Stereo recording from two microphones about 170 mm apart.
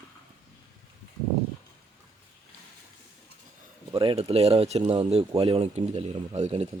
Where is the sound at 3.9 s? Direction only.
30° right (ahead or behind).